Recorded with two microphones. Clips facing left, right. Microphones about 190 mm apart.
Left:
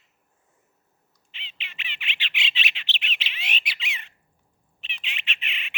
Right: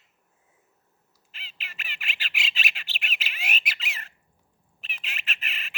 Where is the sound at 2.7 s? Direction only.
10° right (ahead or behind).